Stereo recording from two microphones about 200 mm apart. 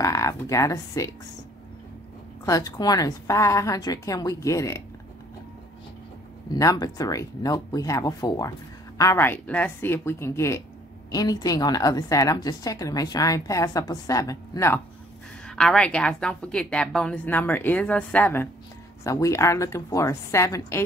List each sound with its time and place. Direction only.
0.0 s speech: 15° left (ahead or behind)
2.4 s speech: 20° left (ahead or behind)
6.5 s speech: 20° left (ahead or behind)
15.4 s a woman's voice: 5° left (ahead or behind)